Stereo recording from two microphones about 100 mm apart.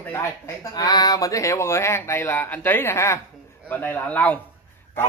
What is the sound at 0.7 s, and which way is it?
Speech, 40° left (ahead or behind).